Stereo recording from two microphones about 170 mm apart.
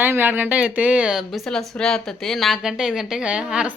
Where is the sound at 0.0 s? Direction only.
10° right (ahead or behind).